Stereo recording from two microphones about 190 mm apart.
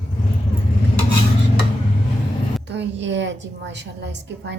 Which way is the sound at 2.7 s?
70° right (ahead or behind).